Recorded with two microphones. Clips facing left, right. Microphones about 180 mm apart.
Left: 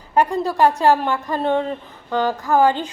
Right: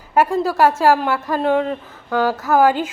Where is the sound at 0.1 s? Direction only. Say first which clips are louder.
Right 2 dB; 5° right (ahead or behind).